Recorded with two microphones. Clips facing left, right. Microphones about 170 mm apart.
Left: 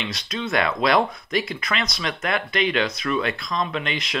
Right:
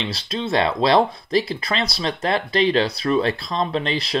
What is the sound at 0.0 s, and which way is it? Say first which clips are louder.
Speech: right 3 dB; 30° right (ahead or behind).